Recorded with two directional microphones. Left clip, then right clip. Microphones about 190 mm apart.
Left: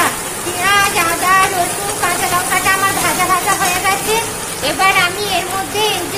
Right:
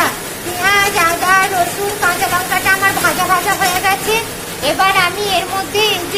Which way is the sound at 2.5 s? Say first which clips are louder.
Right 1 dB; centre (ahead or behind).